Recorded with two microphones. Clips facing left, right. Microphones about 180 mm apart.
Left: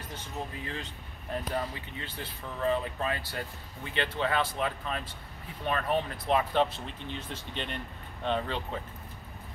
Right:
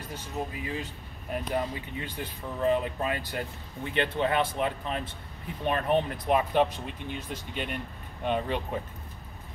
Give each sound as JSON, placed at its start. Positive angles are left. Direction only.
{"t": 0.1, "sound": "speech", "side_deg": -10}